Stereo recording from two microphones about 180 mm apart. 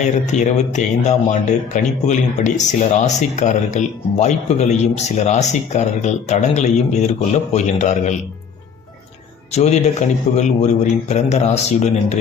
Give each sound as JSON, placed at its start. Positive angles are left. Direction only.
{"t": 0.0, "sound": "speech", "side_deg": 40}
{"t": 9.5, "sound": "speech", "side_deg": 35}